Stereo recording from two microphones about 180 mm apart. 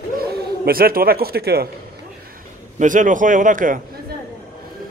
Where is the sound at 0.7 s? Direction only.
55° right (ahead or behind).